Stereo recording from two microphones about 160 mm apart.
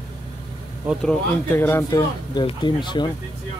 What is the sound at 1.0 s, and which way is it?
Speech, 10° left (ahead or behind).